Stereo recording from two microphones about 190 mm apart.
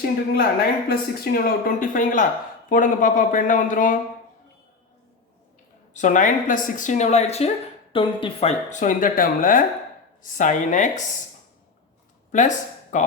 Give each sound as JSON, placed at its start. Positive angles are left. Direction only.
{"t": 0.3, "sound": "speech", "side_deg": 50}
{"t": 5.9, "sound": "a woman's voice", "side_deg": 40}
{"t": 12.3, "sound": "speech", "side_deg": 40}